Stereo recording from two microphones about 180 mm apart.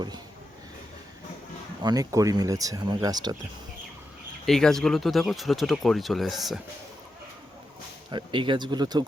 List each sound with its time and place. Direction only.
1.8 s speech: 20° right (ahead or behind)
4.4 s speech: centre (ahead or behind)
8.1 s speech: 25° right (ahead or behind)